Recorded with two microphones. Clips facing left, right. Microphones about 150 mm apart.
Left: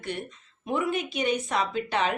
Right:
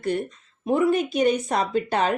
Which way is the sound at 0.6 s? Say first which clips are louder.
Right 7 dB; 40° right (ahead or behind).